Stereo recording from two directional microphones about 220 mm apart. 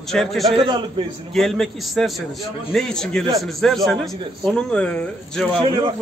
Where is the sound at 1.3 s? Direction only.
Centre (ahead or behind).